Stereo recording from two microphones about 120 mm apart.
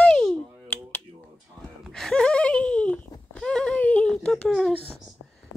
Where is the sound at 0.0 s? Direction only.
5° left (ahead or behind).